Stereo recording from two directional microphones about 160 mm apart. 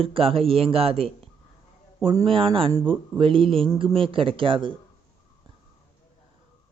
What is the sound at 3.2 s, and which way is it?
Speech, 35° right (ahead or behind).